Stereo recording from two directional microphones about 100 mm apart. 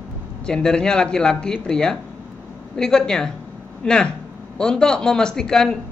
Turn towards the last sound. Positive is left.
turn(degrees=5)  # may be behind; listen again after turning